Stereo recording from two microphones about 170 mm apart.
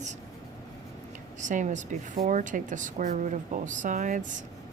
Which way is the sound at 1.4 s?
50° right (ahead or behind).